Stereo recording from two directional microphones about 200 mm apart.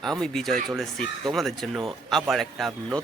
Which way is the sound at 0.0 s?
5° left (ahead or behind).